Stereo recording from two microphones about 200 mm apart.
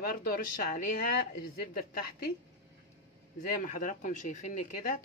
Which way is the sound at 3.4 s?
40° left (ahead or behind).